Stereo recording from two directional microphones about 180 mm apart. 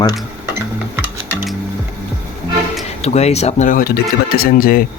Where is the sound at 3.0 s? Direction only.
35° left (ahead or behind).